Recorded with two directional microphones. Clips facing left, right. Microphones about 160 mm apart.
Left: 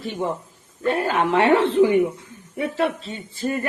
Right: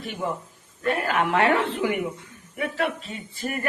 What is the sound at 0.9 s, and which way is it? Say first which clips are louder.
A woman's voice: left 3 dB; 30° left (ahead or behind).